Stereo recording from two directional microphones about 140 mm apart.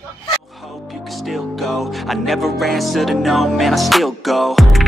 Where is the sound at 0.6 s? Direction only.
Centre (ahead or behind).